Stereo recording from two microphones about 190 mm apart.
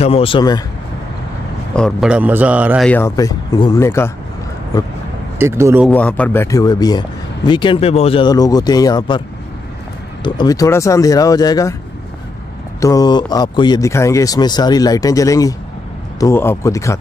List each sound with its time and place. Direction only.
0.0 s speech: 30° left (ahead or behind)
1.8 s a man's voice: centre (ahead or behind)
2.9 s speech: 15° left (ahead or behind)
5.4 s a man's voice: 15° right (ahead or behind)
5.9 s speech: 10° left (ahead or behind); by 9.2 s 25° left (ahead or behind)
10.2 s speech: 20° left (ahead or behind)
12.8 s speech: 20° left (ahead or behind)